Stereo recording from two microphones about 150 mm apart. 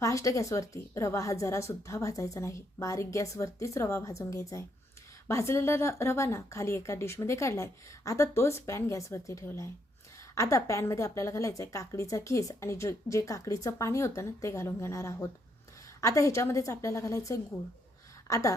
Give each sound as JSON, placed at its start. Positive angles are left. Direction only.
{"t": 0.0, "sound": "a woman's voice", "side_deg": 20}